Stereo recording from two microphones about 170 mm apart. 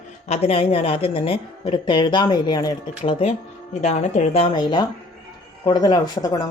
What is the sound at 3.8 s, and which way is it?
Speech, 40° left (ahead or behind).